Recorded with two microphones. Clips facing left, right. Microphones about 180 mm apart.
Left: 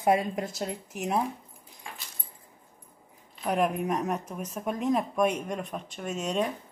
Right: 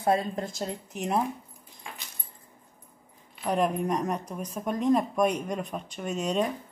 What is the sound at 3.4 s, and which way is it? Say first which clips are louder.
Speech: right 1 dB; 5° left (ahead or behind).